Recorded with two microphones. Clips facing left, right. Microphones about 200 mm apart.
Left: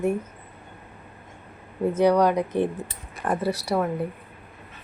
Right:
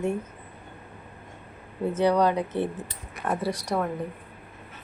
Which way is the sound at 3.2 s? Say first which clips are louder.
Left 2 dB; 5° right (ahead or behind).